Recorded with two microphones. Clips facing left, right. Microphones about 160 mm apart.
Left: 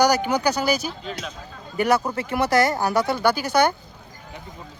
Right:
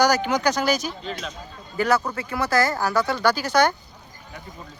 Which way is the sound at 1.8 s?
20° left (ahead or behind).